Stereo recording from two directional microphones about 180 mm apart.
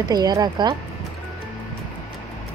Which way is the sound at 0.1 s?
20° right (ahead or behind).